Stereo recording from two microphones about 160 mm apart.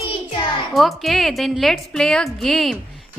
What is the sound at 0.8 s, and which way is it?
A woman's voice, centre (ahead or behind).